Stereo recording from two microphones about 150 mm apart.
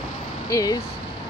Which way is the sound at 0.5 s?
25° left (ahead or behind).